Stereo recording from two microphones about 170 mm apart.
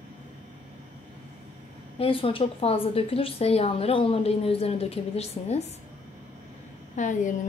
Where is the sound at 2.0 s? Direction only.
35° left (ahead or behind).